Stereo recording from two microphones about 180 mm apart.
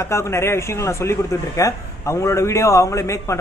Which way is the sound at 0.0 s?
15° left (ahead or behind).